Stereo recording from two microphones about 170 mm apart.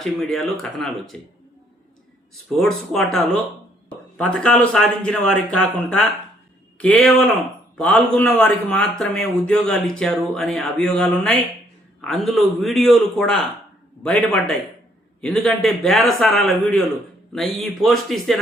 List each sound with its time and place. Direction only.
0.0 s speech: centre (ahead or behind)
2.6 s speech: 5° left (ahead or behind)